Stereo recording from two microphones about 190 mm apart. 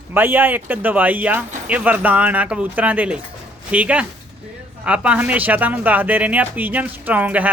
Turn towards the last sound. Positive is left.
turn(degrees=-10)  # may be behind; listen again after turning